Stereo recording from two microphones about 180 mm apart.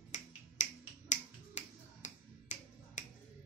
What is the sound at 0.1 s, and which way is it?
Finger snapping, 45° left (ahead or behind).